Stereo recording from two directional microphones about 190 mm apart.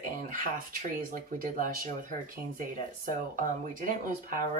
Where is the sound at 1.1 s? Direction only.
45° right (ahead or behind).